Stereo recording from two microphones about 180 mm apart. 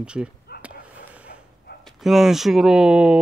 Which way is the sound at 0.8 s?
10° right (ahead or behind).